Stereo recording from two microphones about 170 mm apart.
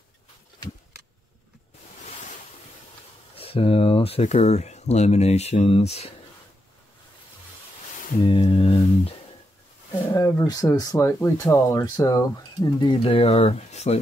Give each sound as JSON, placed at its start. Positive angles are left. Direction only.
{"t": 3.3, "sound": "speech", "side_deg": 35}
{"t": 8.2, "sound": "a sound", "side_deg": 30}
{"t": 10.1, "sound": "speech", "side_deg": 20}